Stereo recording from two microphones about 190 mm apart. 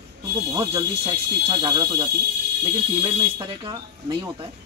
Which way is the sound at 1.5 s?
20° right (ahead or behind).